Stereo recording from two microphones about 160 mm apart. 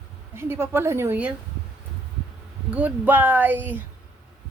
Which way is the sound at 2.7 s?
10° right (ahead or behind).